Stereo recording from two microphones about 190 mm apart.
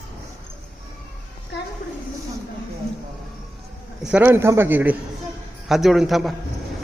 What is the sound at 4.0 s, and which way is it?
A man's voice, 5° right (ahead or behind).